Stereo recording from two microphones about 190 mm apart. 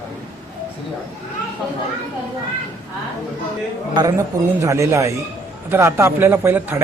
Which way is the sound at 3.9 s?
20° right (ahead or behind).